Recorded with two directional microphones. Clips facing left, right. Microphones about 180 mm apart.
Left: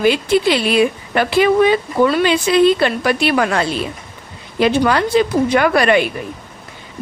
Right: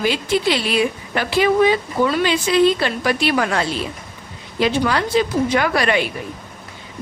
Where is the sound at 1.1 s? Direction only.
55° left (ahead or behind).